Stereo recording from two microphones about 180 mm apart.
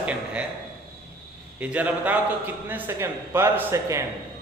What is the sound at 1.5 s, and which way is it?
Speech, 10° right (ahead or behind).